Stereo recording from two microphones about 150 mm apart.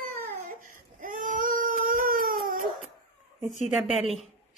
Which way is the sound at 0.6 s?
60° right (ahead or behind).